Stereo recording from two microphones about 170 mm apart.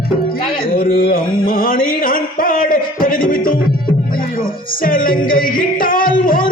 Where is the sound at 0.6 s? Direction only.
55° left (ahead or behind).